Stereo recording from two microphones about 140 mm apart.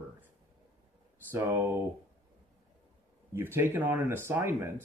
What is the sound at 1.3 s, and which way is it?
Speech, 20° right (ahead or behind).